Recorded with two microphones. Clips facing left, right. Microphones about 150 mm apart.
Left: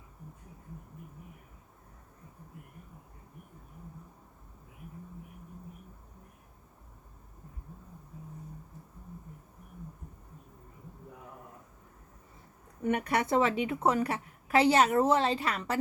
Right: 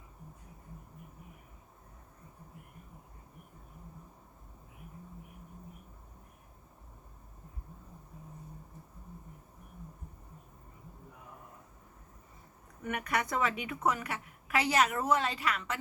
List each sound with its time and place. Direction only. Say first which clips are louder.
12.8 s a woman's voice: left 5 dB; 30° left (ahead or behind)